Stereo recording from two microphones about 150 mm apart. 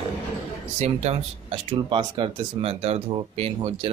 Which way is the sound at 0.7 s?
45° right (ahead or behind).